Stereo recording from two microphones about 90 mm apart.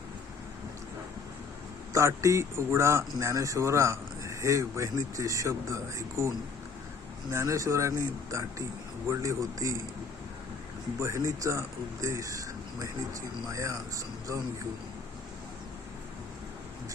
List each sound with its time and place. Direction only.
1.9 s speech: 35° right (ahead or behind)
11.0 s speech: 35° right (ahead or behind)